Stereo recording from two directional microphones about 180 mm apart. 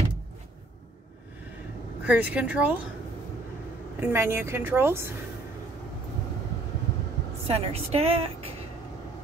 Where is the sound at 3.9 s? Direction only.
15° right (ahead or behind).